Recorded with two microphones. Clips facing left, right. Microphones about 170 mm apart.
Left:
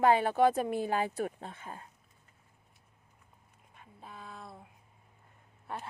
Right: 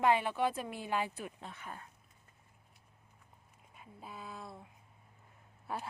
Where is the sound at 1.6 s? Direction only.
30° left (ahead or behind).